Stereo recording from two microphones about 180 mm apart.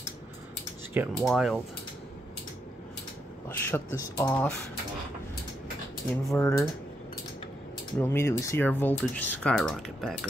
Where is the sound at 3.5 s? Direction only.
10° left (ahead or behind).